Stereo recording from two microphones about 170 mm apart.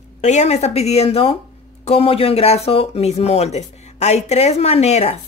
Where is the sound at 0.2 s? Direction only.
40° left (ahead or behind).